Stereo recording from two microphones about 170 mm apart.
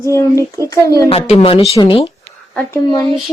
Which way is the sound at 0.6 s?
20° left (ahead or behind).